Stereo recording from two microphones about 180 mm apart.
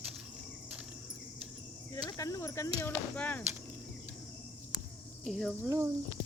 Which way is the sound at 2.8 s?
10° left (ahead or behind).